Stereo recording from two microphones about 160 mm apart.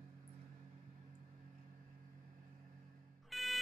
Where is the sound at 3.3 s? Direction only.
Centre (ahead or behind).